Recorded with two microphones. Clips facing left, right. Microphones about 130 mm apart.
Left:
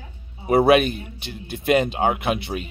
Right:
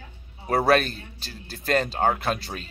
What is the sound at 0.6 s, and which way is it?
A man's voice, 15° left (ahead or behind).